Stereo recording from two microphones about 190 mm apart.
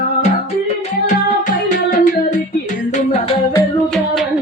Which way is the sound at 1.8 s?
40° left (ahead or behind).